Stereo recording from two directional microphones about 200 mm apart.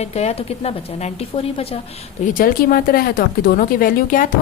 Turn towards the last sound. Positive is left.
turn(degrees=45)  # may be behind; listen again after turning